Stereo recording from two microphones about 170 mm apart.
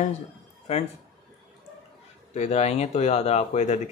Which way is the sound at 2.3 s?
40° left (ahead or behind).